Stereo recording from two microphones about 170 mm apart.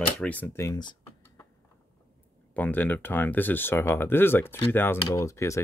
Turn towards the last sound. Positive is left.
turn(degrees=15)  # may be behind; listen again after turning